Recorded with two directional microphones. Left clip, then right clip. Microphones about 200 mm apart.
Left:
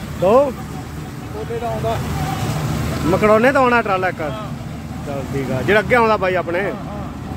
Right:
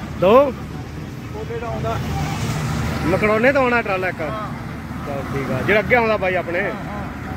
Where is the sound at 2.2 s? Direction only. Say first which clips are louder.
Left 2 dB; 55° left (ahead or behind).